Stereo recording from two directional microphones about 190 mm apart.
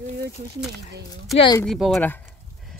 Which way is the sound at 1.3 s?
25° left (ahead or behind).